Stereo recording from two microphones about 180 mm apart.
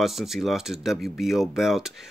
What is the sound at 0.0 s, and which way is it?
Speech, centre (ahead or behind).